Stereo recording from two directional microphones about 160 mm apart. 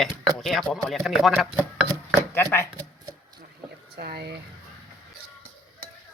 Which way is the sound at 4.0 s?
85° right.